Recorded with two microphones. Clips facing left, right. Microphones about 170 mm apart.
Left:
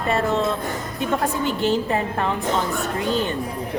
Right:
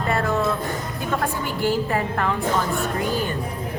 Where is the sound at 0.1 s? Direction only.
20° left (ahead or behind).